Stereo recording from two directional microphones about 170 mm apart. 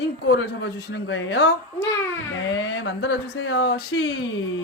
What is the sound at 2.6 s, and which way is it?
A woman's voice, 90° left.